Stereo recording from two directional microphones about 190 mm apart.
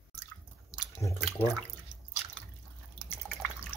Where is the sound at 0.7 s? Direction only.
Centre (ahead or behind).